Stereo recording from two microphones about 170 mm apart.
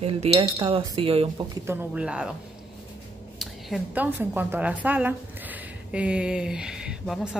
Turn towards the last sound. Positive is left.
turn(degrees=0)  # may be behind; listen again after turning